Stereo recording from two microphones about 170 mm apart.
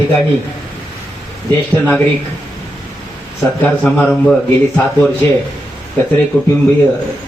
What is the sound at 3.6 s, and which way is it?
Speech, 10° left (ahead or behind).